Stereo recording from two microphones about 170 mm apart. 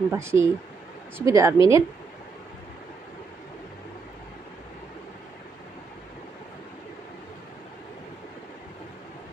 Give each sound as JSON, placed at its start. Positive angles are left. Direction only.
{"t": 0.1, "sound": "speech", "side_deg": -15}